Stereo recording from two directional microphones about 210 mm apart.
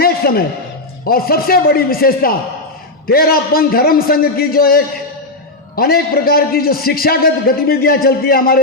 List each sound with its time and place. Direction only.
0.0 s music: 45° left (ahead or behind)
1.0 s a man's voice: 45° left (ahead or behind)